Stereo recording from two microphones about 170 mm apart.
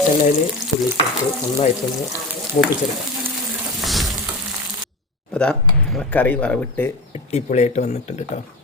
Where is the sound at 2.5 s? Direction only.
45° left (ahead or behind).